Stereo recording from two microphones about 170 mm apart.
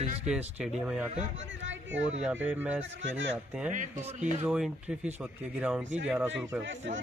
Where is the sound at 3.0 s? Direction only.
90° right.